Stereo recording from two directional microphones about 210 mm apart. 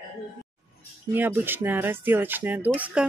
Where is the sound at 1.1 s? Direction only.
10° right (ahead or behind).